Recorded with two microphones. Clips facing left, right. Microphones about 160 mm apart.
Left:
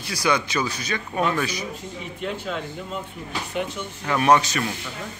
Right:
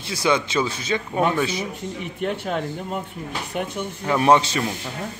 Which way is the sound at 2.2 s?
55° right (ahead or behind).